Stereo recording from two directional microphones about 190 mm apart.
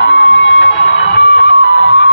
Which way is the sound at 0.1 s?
75° left (ahead or behind).